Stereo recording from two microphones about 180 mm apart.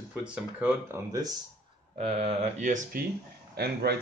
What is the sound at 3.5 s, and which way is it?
Speech, 65° right (ahead or behind).